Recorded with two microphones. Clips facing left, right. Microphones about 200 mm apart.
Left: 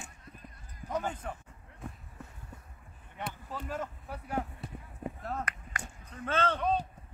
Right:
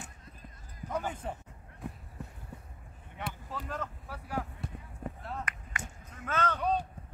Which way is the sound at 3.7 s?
20° left (ahead or behind).